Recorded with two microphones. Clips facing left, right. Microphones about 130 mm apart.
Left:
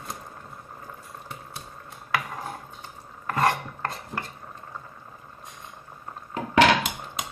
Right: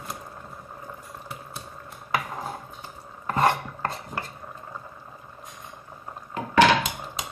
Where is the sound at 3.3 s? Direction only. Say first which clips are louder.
Right 1 dB; 25° right (ahead or behind).